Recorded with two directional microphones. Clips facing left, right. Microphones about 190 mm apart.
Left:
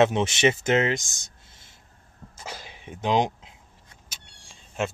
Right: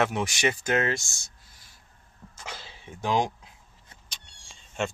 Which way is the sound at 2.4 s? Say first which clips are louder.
Left 3 dB; 15° left (ahead or behind).